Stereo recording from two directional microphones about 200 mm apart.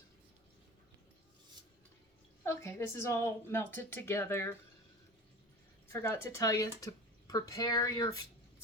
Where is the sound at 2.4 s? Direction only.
15° left (ahead or behind).